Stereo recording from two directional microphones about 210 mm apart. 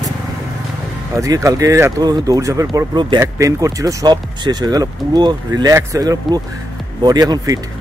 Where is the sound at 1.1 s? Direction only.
15° right (ahead or behind).